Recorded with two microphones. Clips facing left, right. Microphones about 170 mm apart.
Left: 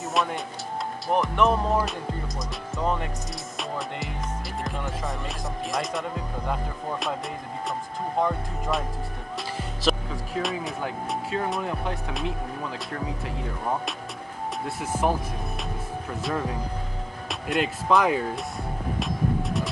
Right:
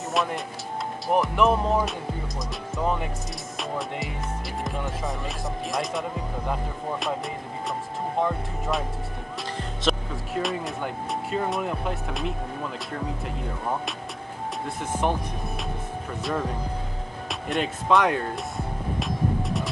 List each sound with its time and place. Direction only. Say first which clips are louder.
0.1 s music: even; centre (ahead or behind)
1.0 s speech: right 1 dB; centre (ahead or behind)
3.5 s music: right 2 dB; centre (ahead or behind)
4.6 s speech: right 1 dB; centre (ahead or behind)
8.2 s speech: left 1 dB; centre (ahead or behind)
14.8 s speech: left 1 dB; 5° left (ahead or behind)
16.3 s speech: right 1 dB; centre (ahead or behind)